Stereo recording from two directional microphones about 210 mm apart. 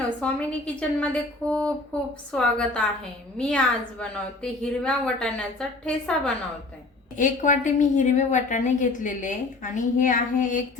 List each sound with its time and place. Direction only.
0.2 s a woman's voice: 5° left (ahead or behind)
7.2 s a woman's voice: 35° left (ahead or behind)